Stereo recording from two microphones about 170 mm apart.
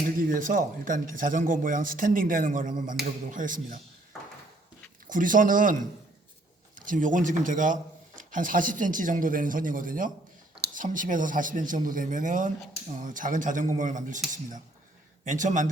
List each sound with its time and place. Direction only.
0.3 s speech: 50° right (ahead or behind)
5.0 s speech: 50° right (ahead or behind)
15.2 s speech: 45° right (ahead or behind)